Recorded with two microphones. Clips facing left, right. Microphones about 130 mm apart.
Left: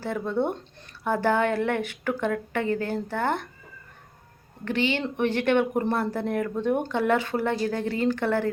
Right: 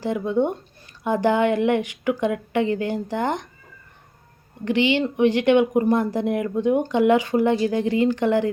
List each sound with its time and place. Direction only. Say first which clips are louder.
0.0 s speech: right 5 dB; 15° right (ahead or behind)
4.6 s speech: right 6 dB; 15° right (ahead or behind)